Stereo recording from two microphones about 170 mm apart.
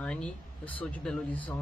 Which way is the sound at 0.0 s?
5° left (ahead or behind).